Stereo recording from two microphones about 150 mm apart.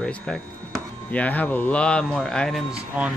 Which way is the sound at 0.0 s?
5° left (ahead or behind).